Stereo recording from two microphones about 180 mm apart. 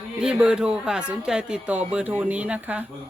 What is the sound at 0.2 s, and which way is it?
Speech, 5° right (ahead or behind).